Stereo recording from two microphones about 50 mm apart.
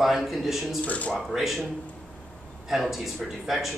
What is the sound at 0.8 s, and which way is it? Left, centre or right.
Speech, left.